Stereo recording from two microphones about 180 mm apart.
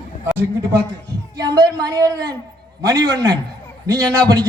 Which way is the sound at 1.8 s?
20° right (ahead or behind).